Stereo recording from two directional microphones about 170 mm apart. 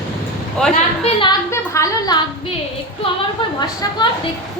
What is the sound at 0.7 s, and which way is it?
Speech, 35° left (ahead or behind).